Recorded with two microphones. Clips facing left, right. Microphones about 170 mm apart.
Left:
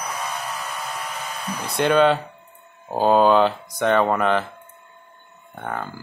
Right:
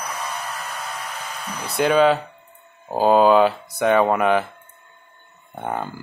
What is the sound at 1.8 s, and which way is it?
Speech, 5° right (ahead or behind).